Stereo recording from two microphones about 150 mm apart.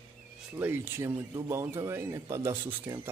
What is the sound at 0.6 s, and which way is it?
Speech, 15° right (ahead or behind).